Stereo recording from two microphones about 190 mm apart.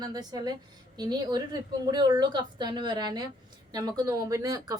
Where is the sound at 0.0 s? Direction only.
20° right (ahead or behind).